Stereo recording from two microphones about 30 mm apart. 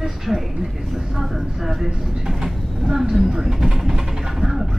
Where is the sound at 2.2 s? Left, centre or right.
Centre.